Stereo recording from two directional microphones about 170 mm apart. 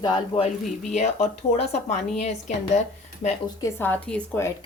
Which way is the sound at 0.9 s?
45° left (ahead or behind).